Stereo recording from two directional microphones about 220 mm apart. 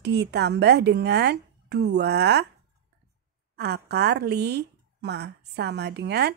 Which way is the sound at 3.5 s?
50° right (ahead or behind).